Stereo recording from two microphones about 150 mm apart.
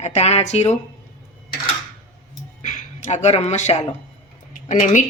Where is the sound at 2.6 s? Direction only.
55° left (ahead or behind).